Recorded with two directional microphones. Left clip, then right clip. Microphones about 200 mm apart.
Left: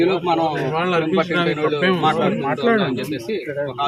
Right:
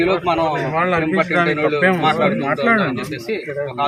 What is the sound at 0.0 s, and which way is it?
Speech, 30° right (ahead or behind).